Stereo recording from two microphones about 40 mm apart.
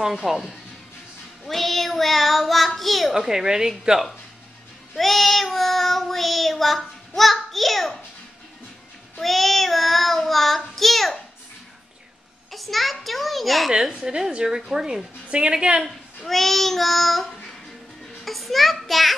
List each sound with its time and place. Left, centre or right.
0.0 s a woman's voice: centre
1.5 s child singing: centre
3.1 s a woman's voice: centre
4.9 s child singing: centre
9.2 s child singing: centre
12.4 s a child's voice: centre
13.7 s a woman's voice: centre
15.2 s a woman's voice: right
16.3 s child singing: centre
17.3 s a sound: centre
18.2 s child singing: centre